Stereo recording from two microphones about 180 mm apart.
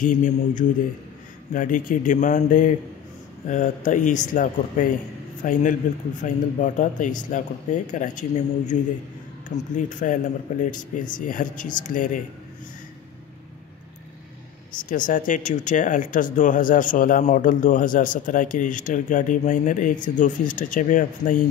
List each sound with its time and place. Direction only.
0.0 s speech: 45° left (ahead or behind)
9.8 s speech: 45° left (ahead or behind)
14.9 s speech: 45° left (ahead or behind)